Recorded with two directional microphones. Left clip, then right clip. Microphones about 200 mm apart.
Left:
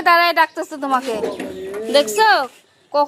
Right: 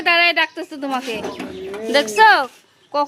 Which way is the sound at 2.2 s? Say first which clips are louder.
Right 2 dB; 15° right (ahead or behind).